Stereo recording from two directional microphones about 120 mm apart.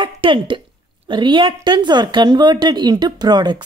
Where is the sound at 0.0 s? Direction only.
45° right (ahead or behind).